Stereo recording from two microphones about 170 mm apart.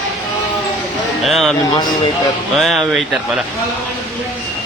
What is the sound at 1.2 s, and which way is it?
Speech, centre (ahead or behind).